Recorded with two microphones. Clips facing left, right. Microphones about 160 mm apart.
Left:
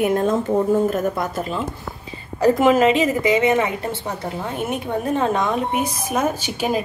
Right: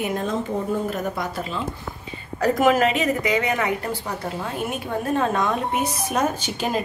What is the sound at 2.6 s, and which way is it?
A woman's voice, 25° left (ahead or behind).